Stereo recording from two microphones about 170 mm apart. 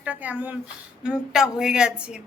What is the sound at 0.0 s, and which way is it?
A woman's voice, 10° right (ahead or behind).